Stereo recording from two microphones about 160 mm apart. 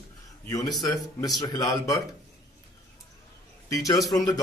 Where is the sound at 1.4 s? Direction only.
25° left (ahead or behind).